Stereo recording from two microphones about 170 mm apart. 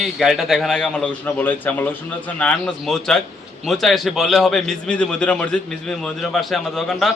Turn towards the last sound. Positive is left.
turn(degrees=0)  # may be behind; listen again after turning